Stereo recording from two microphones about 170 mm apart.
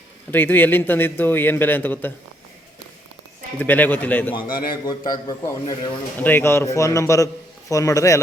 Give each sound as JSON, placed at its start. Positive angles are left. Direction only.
{"t": 0.3, "sound": "a man's voice", "side_deg": 10}
{"t": 3.6, "sound": "a man's voice", "side_deg": 10}
{"t": 4.4, "sound": "a man's voice", "side_deg": 60}
{"t": 5.1, "sound": "a man's voice", "side_deg": 25}
{"t": 6.1, "sound": "a man's voice", "side_deg": 10}